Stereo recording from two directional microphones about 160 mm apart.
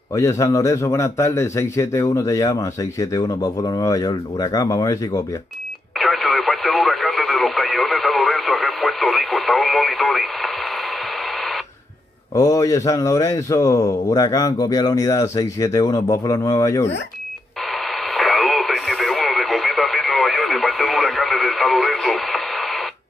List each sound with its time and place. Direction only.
0.1 s a man's voice: 20° left (ahead or behind)
5.9 s radio: centre (ahead or behind)
12.4 s a man's voice: 20° left (ahead or behind)
17.6 s radio: centre (ahead or behind)